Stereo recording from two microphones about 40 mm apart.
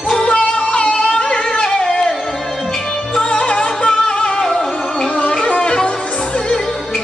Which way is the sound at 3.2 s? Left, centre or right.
Left.